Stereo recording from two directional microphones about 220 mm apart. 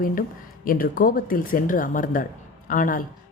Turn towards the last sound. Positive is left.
turn(degrees=40)  # may be behind; listen again after turning